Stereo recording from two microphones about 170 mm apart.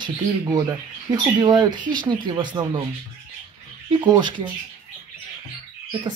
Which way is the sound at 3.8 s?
25° right (ahead or behind).